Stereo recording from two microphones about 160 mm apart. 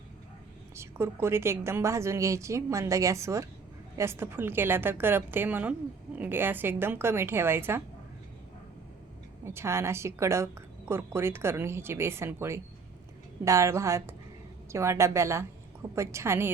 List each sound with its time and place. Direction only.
0.8 s a woman's voice: 15° right (ahead or behind)
9.4 s a woman's voice: 15° right (ahead or behind)